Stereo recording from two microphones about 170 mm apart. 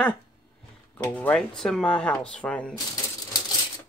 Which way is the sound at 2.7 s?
20° left (ahead or behind).